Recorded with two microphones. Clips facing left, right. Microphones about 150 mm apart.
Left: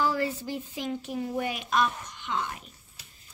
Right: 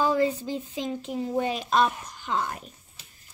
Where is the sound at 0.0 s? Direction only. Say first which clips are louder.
Right 4 dB; 20° right (ahead or behind); by 2.7 s 40° right (ahead or behind).